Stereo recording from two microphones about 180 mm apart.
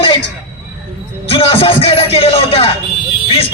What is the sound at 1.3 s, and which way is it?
A man's voice, 30° left (ahead or behind).